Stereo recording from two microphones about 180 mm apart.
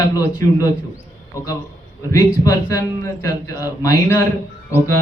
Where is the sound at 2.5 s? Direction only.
20° left (ahead or behind).